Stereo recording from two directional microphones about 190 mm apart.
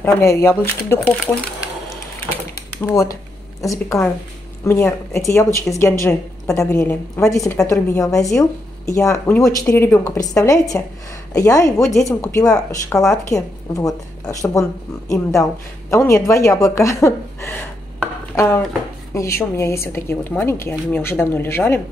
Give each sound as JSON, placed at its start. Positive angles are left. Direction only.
{"t": 0.0, "sound": "a woman's voice", "side_deg": 15}
{"t": 2.8, "sound": "a woman's voice", "side_deg": 15}